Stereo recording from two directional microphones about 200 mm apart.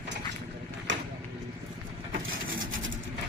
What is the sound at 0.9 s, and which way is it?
Vehicle, 65° right (ahead or behind).